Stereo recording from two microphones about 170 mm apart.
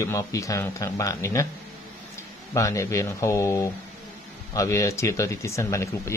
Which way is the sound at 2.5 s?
20° left (ahead or behind).